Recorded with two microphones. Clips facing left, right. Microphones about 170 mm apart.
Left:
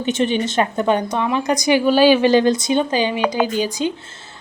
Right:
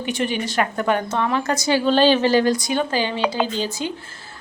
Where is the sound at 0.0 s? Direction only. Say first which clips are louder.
Left 5 dB; 25° left (ahead or behind).